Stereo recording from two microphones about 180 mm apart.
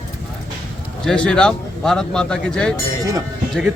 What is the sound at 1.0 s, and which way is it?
A man's voice, 5° left (ahead or behind).